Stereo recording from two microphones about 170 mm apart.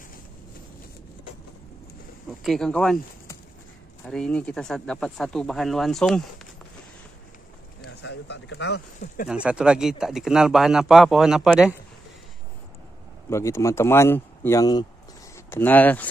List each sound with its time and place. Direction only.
2.4 s speech: 5° left (ahead or behind)
4.0 s speech: 5° left (ahead or behind)
7.8 s speech: 80° left
9.0 s speech: 55° left (ahead or behind)
9.3 s speech: 5° right (ahead or behind)
13.3 s speech: 15° left (ahead or behind)
15.3 s speech: 10° left (ahead or behind)